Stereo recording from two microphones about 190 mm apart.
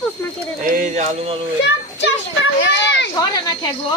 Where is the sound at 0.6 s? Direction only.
40° right (ahead or behind).